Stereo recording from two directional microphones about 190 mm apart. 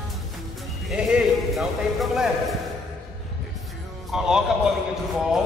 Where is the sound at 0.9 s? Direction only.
Centre (ahead or behind).